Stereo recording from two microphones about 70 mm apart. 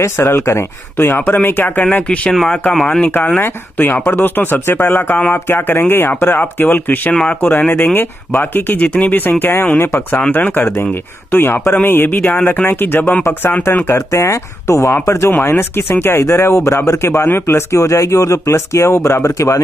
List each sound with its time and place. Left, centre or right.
0.0 s speech: left; by 2.3 s centre
2.3 s speech: centre
3.7 s speech: left
13.8 s speech: left